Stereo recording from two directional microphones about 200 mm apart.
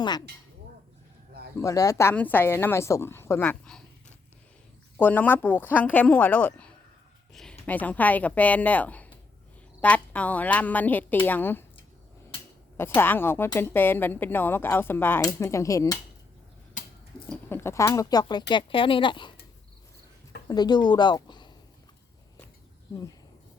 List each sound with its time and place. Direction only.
1.5 s speech: 15° left (ahead or behind)
4.9 s speech: 10° left (ahead or behind)
12.7 s speech: 10° left (ahead or behind)
16.8 s a sound: 40° left (ahead or behind)
17.2 s speech: 10° left (ahead or behind)
20.5 s speech: 20° left (ahead or behind)